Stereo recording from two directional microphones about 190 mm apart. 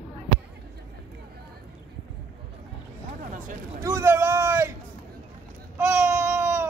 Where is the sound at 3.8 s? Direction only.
15° right (ahead or behind).